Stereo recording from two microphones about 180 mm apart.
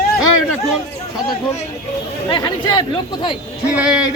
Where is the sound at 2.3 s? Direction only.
25° left (ahead or behind).